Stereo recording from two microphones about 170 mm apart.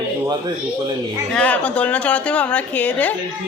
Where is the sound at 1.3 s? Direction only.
5° left (ahead or behind).